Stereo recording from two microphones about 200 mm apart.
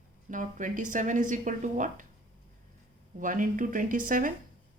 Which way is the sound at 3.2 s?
40° right (ahead or behind).